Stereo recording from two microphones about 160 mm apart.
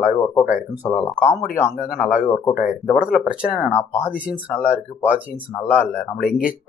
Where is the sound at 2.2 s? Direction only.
20° left (ahead or behind).